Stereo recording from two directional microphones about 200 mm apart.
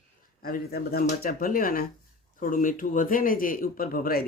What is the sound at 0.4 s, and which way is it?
Speech, 50° left (ahead or behind).